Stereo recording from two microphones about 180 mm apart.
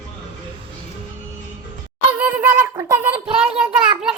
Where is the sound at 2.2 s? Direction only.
10° right (ahead or behind).